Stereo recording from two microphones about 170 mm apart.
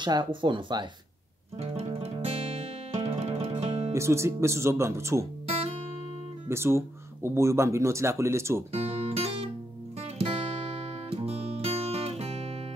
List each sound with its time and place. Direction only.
0.0 s speech: 25° right (ahead or behind)
1.6 s music: 35° right (ahead or behind)
3.9 s speech: 15° right (ahead or behind)
6.5 s speech: 15° right (ahead or behind)
8.7 s music: 35° right (ahead or behind)